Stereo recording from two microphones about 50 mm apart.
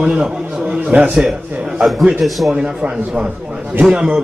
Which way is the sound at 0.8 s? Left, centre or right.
Right.